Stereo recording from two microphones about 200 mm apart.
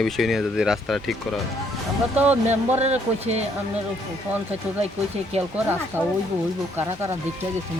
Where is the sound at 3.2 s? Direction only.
35° right (ahead or behind).